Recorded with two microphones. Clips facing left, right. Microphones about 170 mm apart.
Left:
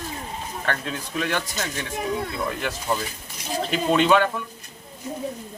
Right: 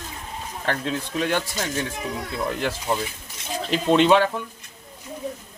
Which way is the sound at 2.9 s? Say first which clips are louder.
Right 1 dB; 25° right (ahead or behind).